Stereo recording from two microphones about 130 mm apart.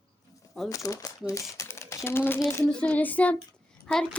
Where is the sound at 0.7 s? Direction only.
25° left (ahead or behind).